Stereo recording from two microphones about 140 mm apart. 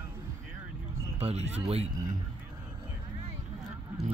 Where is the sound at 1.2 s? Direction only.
50° right (ahead or behind).